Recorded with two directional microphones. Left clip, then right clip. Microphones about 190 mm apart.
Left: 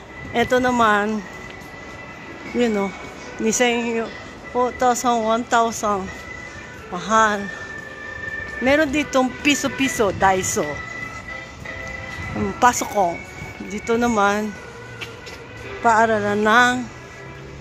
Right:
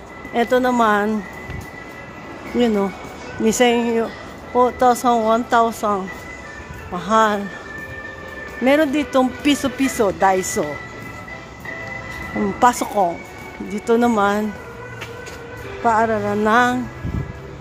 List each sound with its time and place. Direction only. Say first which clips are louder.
0.3 s speech: right 1 dB; 5° right (ahead or behind)
2.5 s speech: right 2 dB; 10° right (ahead or behind)
8.6 s speech: right 2 dB; 10° right (ahead or behind)
12.5 s speech: right 1 dB; 15° right (ahead or behind)
15.9 s speech: left 1 dB; centre (ahead or behind)